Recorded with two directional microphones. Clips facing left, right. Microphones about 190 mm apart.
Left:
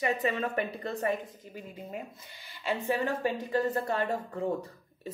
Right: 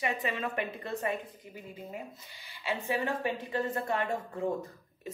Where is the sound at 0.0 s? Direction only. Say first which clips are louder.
Left 4 dB; 40° left (ahead or behind).